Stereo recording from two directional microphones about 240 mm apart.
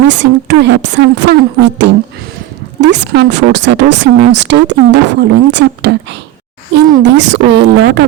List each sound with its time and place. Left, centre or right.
0.1 s speech: right
7.0 s speech: right